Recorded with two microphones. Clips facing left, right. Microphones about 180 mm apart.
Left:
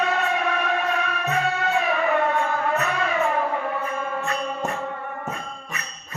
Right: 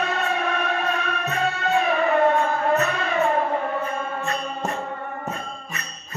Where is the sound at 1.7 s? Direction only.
35° right (ahead or behind).